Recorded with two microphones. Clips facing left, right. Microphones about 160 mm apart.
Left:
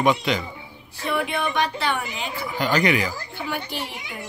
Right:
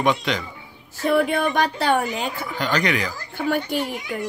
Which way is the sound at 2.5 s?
5° left (ahead or behind).